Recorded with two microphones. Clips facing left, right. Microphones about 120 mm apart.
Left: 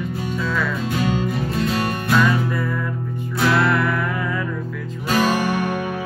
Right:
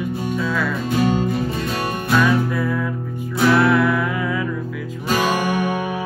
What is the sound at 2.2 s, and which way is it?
Music, 5° right (ahead or behind).